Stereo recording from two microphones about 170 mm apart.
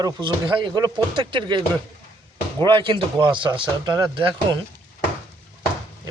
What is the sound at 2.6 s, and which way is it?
Speech, 30° right (ahead or behind).